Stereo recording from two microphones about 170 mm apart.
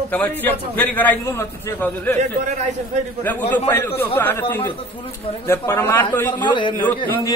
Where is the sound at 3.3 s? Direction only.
10° left (ahead or behind).